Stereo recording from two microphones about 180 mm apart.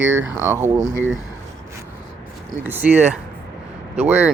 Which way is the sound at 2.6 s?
10° right (ahead or behind).